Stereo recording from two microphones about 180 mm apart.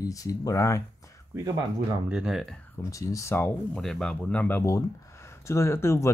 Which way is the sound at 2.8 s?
20° left (ahead or behind).